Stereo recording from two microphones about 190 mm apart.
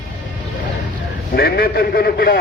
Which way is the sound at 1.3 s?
55° left (ahead or behind).